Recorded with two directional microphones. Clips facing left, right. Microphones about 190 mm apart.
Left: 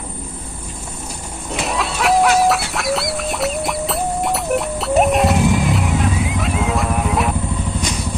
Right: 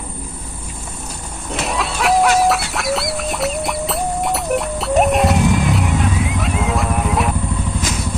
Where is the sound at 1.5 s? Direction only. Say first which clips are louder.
Even; centre (ahead or behind).